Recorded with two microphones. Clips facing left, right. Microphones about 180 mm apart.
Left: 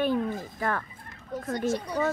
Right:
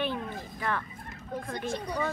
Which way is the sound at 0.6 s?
45° left (ahead or behind).